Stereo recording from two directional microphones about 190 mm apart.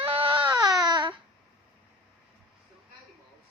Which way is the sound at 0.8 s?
25° right (ahead or behind).